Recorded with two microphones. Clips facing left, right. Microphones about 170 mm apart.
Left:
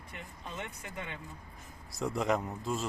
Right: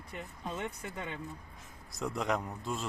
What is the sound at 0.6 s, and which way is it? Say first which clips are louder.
Speech: right 3 dB; 35° right (ahead or behind).